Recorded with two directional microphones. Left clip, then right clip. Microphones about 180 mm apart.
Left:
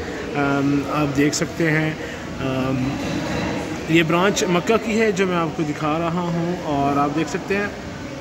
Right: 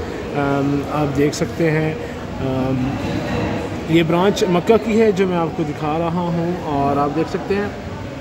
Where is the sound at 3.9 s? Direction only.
10° right (ahead or behind).